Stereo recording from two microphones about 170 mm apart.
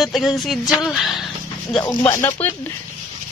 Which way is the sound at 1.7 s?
20° left (ahead or behind).